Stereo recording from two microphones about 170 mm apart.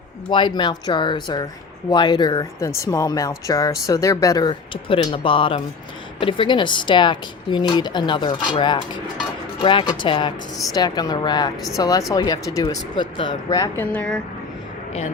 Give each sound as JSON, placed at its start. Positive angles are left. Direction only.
{"t": 0.3, "sound": "speech", "side_deg": 25}
{"t": 13.9, "sound": "speech", "side_deg": 5}